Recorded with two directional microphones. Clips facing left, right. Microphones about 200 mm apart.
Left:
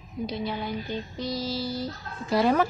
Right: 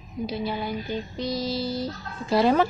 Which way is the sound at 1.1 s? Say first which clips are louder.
Right 3 dB; 20° right (ahead or behind).